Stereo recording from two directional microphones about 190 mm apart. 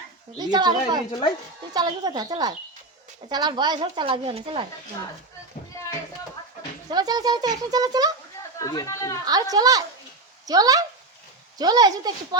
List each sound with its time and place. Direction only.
0.3 s speech: 20° right (ahead or behind)
6.9 s speech: 20° right (ahead or behind)
8.5 s speech: 15° left (ahead or behind)
9.2 s speech: 20° right (ahead or behind)